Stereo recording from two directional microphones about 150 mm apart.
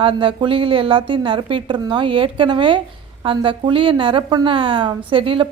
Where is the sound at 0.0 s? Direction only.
35° right (ahead or behind).